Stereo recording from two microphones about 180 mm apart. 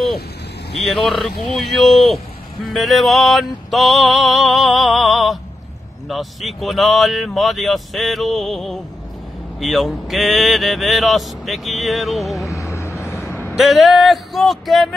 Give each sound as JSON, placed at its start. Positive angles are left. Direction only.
{"t": 0.7, "sound": "speech", "side_deg": 0}
{"t": 12.4, "sound": "vehicle", "side_deg": 15}
{"t": 13.5, "sound": "speech", "side_deg": 0}